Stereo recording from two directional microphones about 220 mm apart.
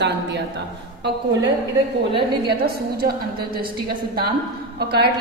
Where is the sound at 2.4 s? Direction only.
45° right (ahead or behind).